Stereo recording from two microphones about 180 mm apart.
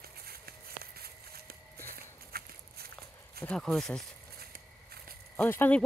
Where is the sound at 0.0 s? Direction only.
60° right (ahead or behind).